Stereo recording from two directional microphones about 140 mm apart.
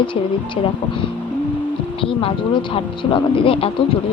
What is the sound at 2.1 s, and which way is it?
Speech, 40° left (ahead or behind).